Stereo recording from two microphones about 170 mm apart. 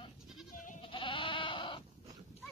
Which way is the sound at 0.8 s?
30° left (ahead or behind).